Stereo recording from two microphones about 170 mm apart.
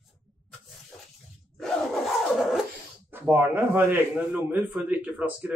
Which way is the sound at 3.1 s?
15° right (ahead or behind).